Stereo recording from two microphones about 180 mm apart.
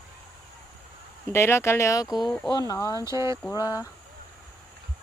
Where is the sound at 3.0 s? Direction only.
15° right (ahead or behind).